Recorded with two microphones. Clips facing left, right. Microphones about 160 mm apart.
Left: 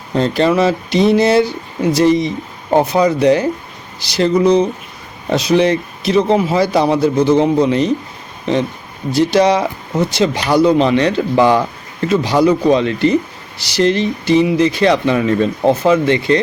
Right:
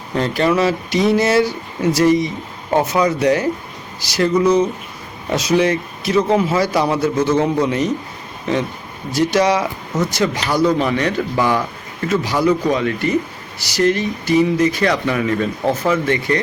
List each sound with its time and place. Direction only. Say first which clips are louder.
0.1 s speech: left 3 dB; 30° left (ahead or behind)
9.1 s speech: left 3 dB; 25° left (ahead or behind)